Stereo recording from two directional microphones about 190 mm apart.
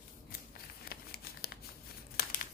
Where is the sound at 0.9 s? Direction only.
55° left (ahead or behind).